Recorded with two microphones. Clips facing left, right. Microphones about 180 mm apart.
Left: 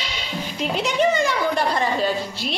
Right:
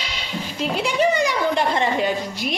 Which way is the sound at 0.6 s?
10° right (ahead or behind).